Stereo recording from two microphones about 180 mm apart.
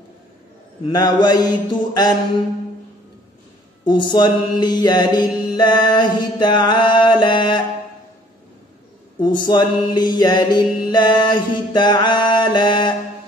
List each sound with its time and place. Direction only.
0.8 s mantra: 20° left (ahead or behind)
3.8 s mantra: 25° left (ahead or behind)
9.2 s mantra: 25° left (ahead or behind)